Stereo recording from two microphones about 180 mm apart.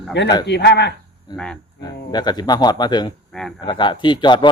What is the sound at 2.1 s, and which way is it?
A man's voice, 25° left (ahead or behind).